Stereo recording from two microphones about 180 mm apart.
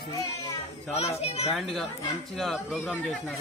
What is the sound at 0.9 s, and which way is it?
Speech, 35° left (ahead or behind).